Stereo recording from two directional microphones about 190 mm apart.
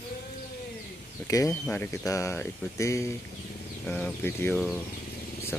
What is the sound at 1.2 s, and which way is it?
Speech, 15° left (ahead or behind).